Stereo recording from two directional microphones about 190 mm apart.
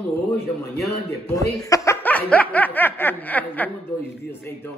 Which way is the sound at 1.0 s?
15° left (ahead or behind).